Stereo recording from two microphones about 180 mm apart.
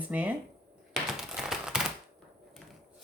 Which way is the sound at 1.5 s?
5° right (ahead or behind).